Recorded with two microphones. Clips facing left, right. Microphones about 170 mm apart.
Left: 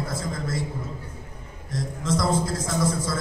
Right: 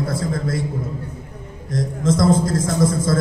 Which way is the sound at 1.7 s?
50° right (ahead or behind).